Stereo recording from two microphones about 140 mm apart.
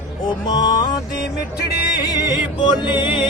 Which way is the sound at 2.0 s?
25° left (ahead or behind).